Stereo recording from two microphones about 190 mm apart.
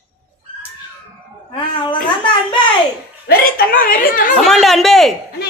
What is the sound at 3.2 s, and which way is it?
A woman's voice, 50° left (ahead or behind).